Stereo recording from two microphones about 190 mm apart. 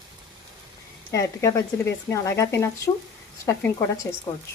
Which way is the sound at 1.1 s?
15° left (ahead or behind).